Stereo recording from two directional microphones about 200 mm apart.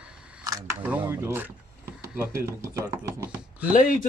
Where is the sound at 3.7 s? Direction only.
40° left (ahead or behind).